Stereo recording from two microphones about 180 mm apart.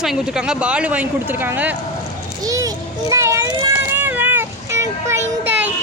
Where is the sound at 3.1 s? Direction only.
15° right (ahead or behind).